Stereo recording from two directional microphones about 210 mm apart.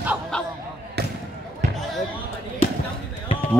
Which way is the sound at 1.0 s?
50° right (ahead or behind).